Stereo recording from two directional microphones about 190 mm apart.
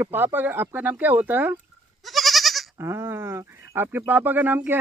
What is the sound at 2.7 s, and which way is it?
Speech, 15° right (ahead or behind).